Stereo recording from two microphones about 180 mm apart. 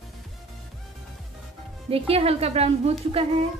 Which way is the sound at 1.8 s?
30° right (ahead or behind).